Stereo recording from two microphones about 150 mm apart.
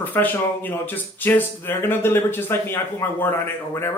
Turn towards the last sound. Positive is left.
turn(degrees=15)  # may be behind; listen again after turning